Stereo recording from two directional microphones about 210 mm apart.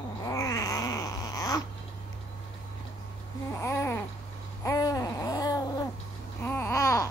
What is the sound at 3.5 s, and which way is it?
Babbling, 15° left (ahead or behind).